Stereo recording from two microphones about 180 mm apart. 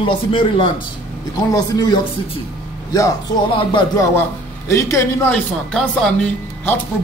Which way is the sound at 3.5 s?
20° left (ahead or behind).